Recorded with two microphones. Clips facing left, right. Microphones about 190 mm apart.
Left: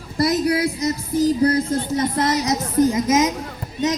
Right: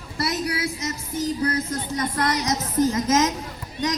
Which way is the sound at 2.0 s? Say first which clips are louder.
Left 3 dB; 20° left (ahead or behind).